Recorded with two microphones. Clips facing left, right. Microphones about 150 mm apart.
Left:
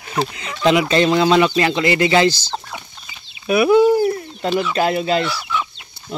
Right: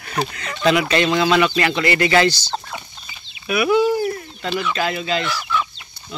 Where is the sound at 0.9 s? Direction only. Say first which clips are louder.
Left 3 dB; 30° left (ahead or behind).